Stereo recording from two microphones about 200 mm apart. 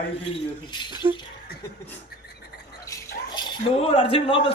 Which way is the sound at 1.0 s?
25° right (ahead or behind).